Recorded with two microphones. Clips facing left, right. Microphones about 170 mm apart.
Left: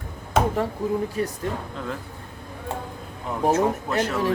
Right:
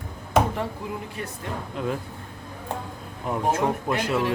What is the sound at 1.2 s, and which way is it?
Speech, 35° left (ahead or behind).